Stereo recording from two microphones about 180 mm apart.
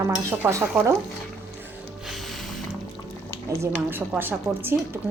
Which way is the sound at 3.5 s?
15° right (ahead or behind).